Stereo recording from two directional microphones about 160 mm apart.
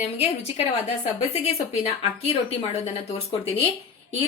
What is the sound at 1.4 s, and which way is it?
Speech, 40° left (ahead or behind).